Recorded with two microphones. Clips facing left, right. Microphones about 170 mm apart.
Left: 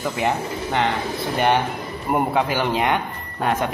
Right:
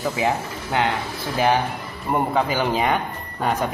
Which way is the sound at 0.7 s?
Centre (ahead or behind).